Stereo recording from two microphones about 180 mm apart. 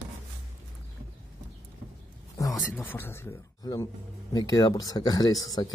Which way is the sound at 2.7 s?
10° left (ahead or behind).